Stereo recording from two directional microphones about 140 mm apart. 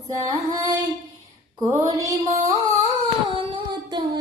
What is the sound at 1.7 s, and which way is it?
Mantra, 25° right (ahead or behind).